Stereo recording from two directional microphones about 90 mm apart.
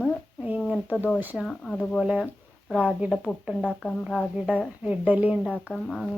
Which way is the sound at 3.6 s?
15° left (ahead or behind).